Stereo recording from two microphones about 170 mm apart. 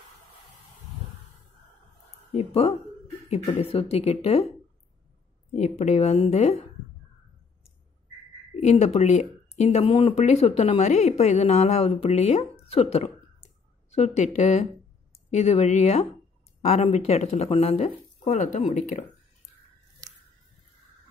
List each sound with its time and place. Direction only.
2.3 s a woman's voice: 35° left (ahead or behind)
5.5 s a woman's voice: 45° left (ahead or behind)
8.6 s a woman's voice: 40° left (ahead or behind)